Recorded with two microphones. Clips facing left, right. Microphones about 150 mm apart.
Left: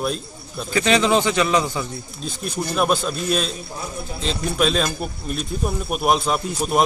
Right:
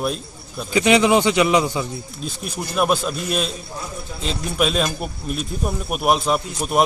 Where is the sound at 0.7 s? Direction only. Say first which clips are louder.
Right 2 dB; 15° right (ahead or behind).